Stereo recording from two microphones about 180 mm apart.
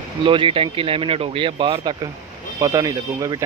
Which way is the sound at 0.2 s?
30° right (ahead or behind).